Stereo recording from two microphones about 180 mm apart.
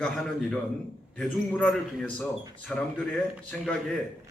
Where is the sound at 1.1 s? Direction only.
10° left (ahead or behind).